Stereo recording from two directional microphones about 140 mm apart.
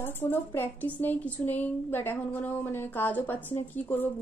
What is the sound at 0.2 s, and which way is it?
A woman's voice, 15° left (ahead or behind).